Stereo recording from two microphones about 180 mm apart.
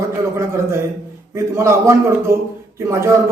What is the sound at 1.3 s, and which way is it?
Speech, 15° right (ahead or behind).